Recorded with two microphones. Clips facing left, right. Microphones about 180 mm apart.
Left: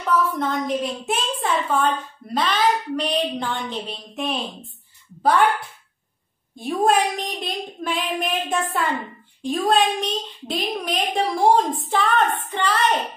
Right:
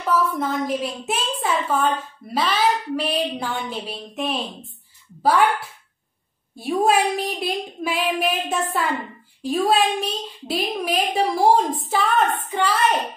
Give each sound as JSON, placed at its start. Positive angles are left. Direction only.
{"t": 0.1, "sound": "a woman's voice", "side_deg": -5}